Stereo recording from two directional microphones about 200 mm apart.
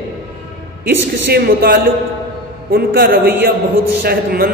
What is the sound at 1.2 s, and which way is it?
A man's voice, 50° right (ahead or behind).